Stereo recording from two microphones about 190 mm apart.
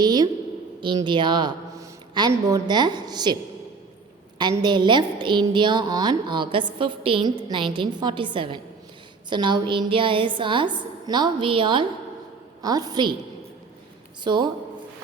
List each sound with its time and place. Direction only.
0.0 s a woman's voice: 20° right (ahead or behind)
4.4 s a woman's voice: 20° right (ahead or behind)
14.3 s a woman's voice: 25° right (ahead or behind)